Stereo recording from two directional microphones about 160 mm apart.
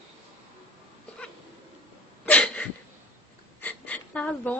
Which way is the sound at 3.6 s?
10° left (ahead or behind).